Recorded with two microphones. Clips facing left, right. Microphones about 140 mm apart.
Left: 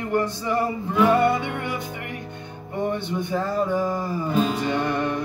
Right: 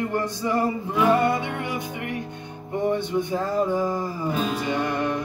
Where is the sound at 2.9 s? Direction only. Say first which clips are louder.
Right 2 dB; 15° right (ahead or behind).